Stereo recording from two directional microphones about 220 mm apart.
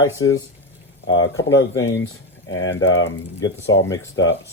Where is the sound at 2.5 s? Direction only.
55° left (ahead or behind).